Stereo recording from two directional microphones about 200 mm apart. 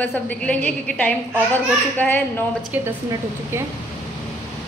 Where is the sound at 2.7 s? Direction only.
10° right (ahead or behind).